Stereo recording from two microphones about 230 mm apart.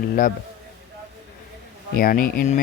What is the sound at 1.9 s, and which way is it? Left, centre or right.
Speech, left.